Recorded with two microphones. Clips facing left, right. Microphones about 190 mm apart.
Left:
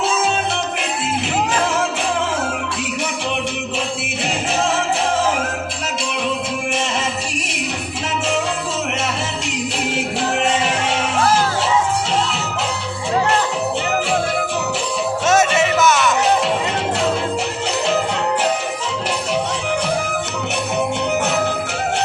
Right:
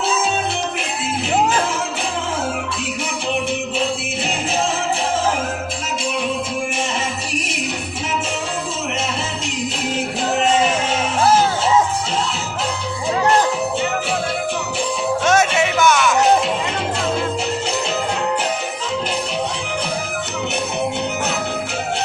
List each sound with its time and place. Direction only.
15.3 s music: centre (ahead or behind)